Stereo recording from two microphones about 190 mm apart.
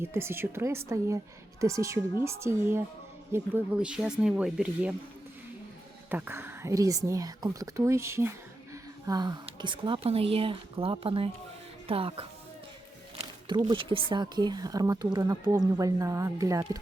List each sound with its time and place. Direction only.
0.0 s speech: 15° right (ahead or behind)
6.1 s speech: 10° right (ahead or behind); by 12.2 s 30° right (ahead or behind)
13.7 s speech: 25° right (ahead or behind)